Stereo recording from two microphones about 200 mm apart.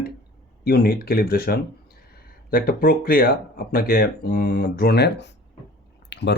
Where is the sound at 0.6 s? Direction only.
50° left (ahead or behind).